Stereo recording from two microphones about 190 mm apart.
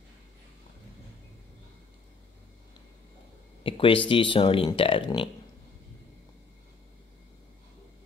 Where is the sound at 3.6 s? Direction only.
30° left (ahead or behind).